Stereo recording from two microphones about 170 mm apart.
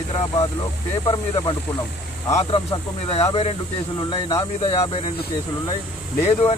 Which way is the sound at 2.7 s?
35° left (ahead or behind).